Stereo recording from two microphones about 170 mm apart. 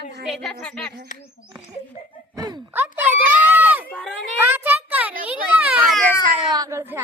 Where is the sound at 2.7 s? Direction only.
10° right (ahead or behind).